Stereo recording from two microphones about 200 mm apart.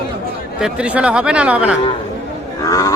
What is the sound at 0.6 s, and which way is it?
Speech, 5° right (ahead or behind).